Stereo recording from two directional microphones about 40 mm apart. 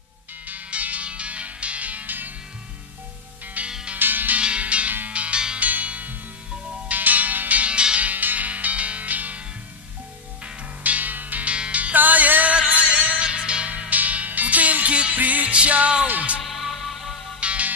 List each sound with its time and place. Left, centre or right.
0.5 s music: right
3.6 s music: right
4.0 s music: right
4.4 s music: right
8.1 s music: right
10.8 s music: right
11.4 s music: right
12.0 s music: right
12.5 s music: right
13.7 s music: right
16.4 s music: centre
17.4 s music: right